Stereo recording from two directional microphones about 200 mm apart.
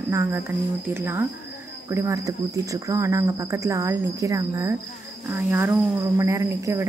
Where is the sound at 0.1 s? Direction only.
10° right (ahead or behind).